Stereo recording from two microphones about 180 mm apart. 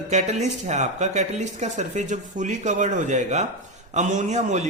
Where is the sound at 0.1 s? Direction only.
40° right (ahead or behind).